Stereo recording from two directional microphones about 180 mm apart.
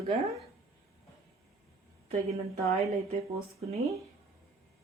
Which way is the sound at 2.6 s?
35° right (ahead or behind).